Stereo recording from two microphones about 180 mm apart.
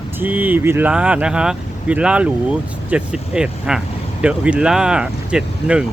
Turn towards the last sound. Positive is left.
turn(degrees=-5)  # may be behind; listen again after turning